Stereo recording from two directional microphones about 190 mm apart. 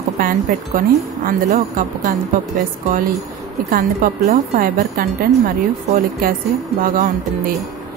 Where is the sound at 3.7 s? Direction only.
45° right (ahead or behind).